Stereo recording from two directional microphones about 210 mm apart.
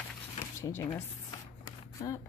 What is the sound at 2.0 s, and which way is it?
Speech, 20° left (ahead or behind).